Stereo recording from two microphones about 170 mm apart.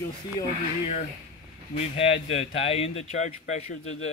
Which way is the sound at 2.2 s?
35° left (ahead or behind).